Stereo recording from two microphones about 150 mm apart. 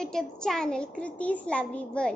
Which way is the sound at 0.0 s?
5° left (ahead or behind).